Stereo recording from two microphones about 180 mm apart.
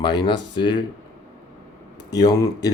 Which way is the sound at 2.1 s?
20° left (ahead or behind).